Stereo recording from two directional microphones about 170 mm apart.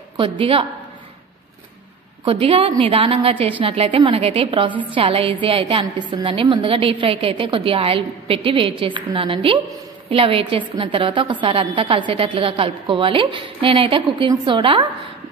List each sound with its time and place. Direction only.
0.2 s a woman's voice: 30° right (ahead or behind)
2.2 s a woman's voice: 30° right (ahead or behind)